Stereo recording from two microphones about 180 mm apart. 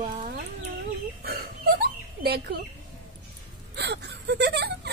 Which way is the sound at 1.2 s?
55° right (ahead or behind).